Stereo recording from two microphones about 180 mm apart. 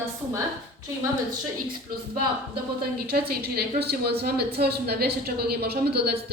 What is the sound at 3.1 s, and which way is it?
A woman's voice, 60° right (ahead or behind).